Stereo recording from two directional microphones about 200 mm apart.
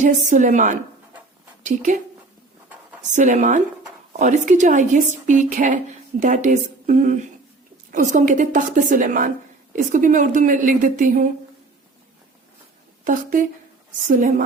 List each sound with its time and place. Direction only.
0.0 s a woman's voice: 40° right (ahead or behind)
3.1 s a woman's voice: 40° right (ahead or behind)
14.1 s a woman's voice: 40° right (ahead or behind)